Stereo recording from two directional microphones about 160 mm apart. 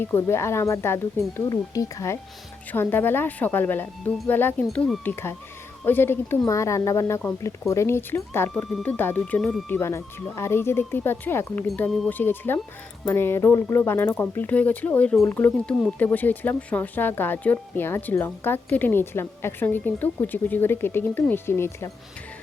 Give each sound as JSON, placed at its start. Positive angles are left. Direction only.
{"t": 0.0, "sound": "speech", "side_deg": 15}